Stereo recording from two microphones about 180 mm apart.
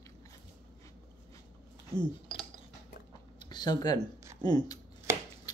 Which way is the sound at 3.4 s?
25° left (ahead or behind).